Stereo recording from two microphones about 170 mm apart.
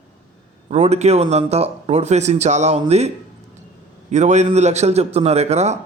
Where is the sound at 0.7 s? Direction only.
40° right (ahead or behind).